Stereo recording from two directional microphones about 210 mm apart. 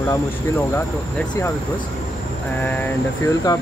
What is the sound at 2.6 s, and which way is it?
Speech, 10° left (ahead or behind).